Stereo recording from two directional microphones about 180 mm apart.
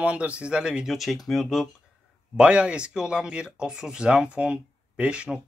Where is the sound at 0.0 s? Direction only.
5° right (ahead or behind).